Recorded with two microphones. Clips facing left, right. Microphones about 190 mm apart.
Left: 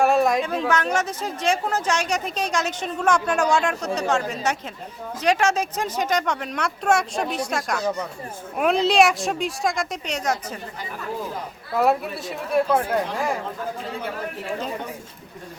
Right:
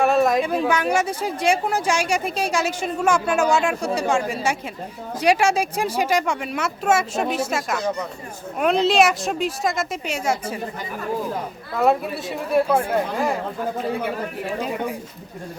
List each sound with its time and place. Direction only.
0.0 s a sound: centre (ahead or behind)
0.4 s speech: 10° right (ahead or behind)
12.5 s speech: 5° right (ahead or behind)